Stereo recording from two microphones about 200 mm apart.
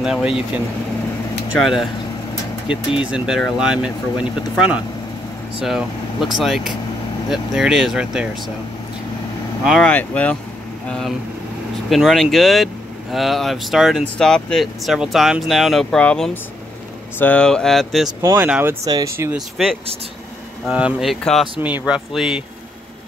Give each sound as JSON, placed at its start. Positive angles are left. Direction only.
{"t": 0.0, "sound": "speech", "side_deg": -5}
{"t": 1.6, "sound": "speech", "side_deg": 0}
{"t": 3.0, "sound": "speech", "side_deg": -5}
{"t": 5.7, "sound": "speech", "side_deg": 0}
{"t": 9.7, "sound": "speech", "side_deg": 5}
{"t": 18.2, "sound": "speech", "side_deg": -15}
{"t": 19.3, "sound": "speech", "side_deg": 0}
{"t": 21.5, "sound": "speech", "side_deg": -10}